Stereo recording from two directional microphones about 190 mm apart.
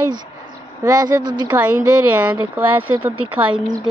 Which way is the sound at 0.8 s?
20° right (ahead or behind).